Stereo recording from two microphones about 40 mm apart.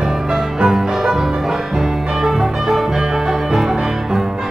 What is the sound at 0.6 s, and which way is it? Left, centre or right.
Music, centre.